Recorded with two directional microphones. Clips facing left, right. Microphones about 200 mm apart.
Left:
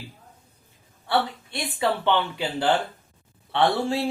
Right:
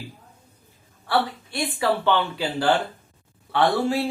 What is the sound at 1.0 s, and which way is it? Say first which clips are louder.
A woman's voice: right 1 dB; 20° left (ahead or behind).